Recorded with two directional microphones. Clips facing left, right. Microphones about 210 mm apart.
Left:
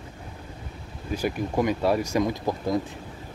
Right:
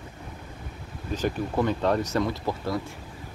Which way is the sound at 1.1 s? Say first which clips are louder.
Left 1 dB; 10° left (ahead or behind).